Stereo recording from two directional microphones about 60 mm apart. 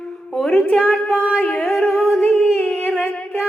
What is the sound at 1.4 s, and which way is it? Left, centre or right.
Music, centre.